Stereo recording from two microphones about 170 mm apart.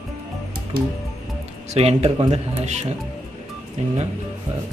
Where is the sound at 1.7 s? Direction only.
40° right (ahead or behind).